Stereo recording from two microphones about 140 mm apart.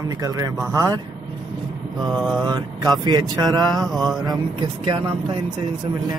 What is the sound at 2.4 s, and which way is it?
Speech, 30° right (ahead or behind).